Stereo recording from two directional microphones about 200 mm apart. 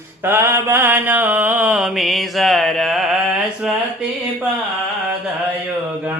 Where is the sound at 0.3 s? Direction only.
10° right (ahead or behind).